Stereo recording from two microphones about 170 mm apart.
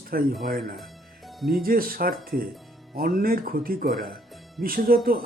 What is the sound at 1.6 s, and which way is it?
Speech, 60° right (ahead or behind).